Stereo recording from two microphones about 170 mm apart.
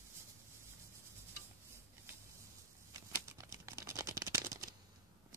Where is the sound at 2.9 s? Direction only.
20° right (ahead or behind).